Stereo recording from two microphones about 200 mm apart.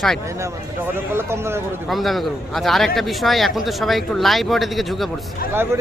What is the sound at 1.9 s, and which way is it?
Speech, centre (ahead or behind).